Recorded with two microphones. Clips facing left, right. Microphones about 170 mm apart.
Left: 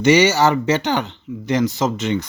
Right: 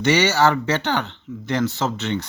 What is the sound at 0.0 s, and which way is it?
Speech, 15° left (ahead or behind).